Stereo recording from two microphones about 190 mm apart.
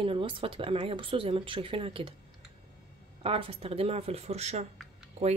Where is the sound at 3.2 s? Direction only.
30° right (ahead or behind).